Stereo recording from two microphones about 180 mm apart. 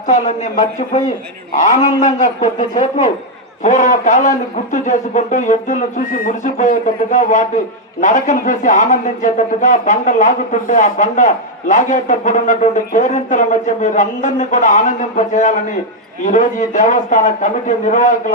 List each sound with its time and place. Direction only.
0.1 s speech: 45° left (ahead or behind)